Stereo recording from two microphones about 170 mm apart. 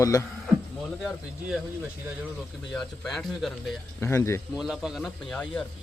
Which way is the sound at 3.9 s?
15° left (ahead or behind).